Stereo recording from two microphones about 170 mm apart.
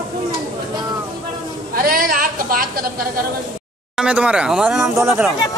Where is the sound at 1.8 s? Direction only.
60° right (ahead or behind).